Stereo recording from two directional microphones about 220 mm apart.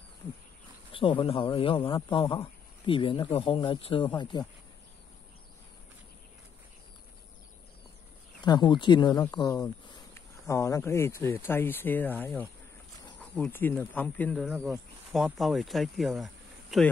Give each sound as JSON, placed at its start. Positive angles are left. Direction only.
{"t": 0.9, "sound": "speech", "side_deg": 25}
{"t": 8.5, "sound": "speech", "side_deg": 20}